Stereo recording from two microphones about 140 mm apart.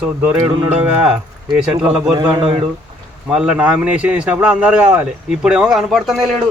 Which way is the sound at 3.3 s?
5° right (ahead or behind).